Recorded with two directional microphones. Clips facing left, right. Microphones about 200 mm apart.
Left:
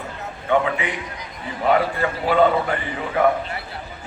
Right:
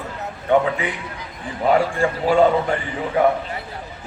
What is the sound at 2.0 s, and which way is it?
Speech, 30° right (ahead or behind).